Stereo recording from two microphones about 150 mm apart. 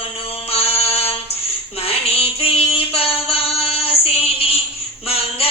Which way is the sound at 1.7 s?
40° left (ahead or behind).